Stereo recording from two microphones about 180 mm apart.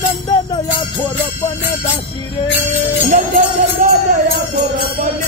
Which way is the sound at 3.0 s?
50° right (ahead or behind).